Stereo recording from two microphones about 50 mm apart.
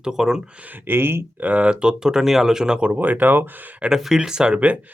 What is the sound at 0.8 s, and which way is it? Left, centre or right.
Speech, right.